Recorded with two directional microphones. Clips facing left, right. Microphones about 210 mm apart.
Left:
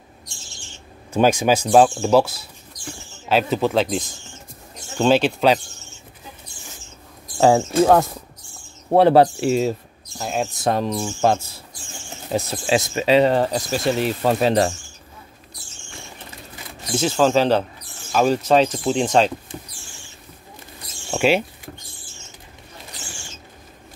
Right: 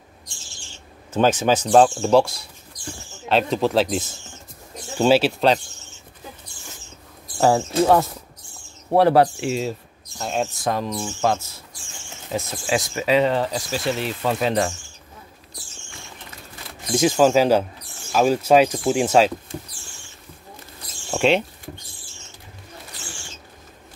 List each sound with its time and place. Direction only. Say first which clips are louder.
1.1 s speech: left 1 dB; 10° left (ahead or behind); by 5.3 s 5° right (ahead or behind)
7.4 s speech: left 2 dB; 10° left (ahead or behind)
8.9 s speech: left 2 dB; 25° left (ahead or behind)
9.4 s speech: left 5 dB; 45° left (ahead or behind)
10.1 s speech: even; 5° left (ahead or behind)
10.7 s speech: left 3 dB; 30° left (ahead or behind)
16.9 s speech: right 1 dB; 10° right (ahead or behind)
21.1 s speech: even; 5° left (ahead or behind)